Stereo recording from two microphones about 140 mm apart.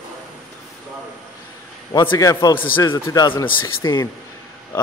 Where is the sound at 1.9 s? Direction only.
30° left (ahead or behind).